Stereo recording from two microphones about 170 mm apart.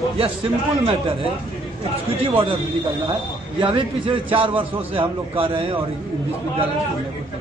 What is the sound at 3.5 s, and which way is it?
A man's voice, 30° right (ahead or behind).